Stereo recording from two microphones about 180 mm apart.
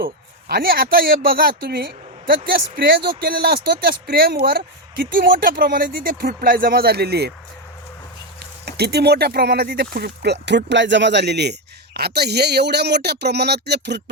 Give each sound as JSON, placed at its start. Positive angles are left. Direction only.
{"t": 0.0, "sound": "speech", "side_deg": -55}
{"t": 8.6, "sound": "speech", "side_deg": -65}
{"t": 10.4, "sound": "speech", "side_deg": -80}